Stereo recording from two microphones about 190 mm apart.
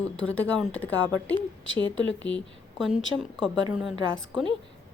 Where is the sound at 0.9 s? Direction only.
80° left.